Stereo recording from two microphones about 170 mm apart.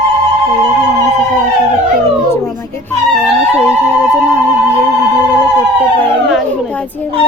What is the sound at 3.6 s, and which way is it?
Music, 15° left (ahead or behind).